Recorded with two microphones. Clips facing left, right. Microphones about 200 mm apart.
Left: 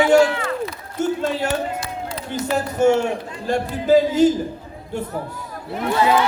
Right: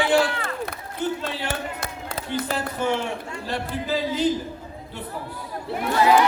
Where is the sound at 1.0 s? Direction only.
45° left (ahead or behind).